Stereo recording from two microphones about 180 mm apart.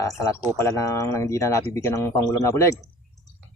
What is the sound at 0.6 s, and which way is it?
Speech, 15° left (ahead or behind).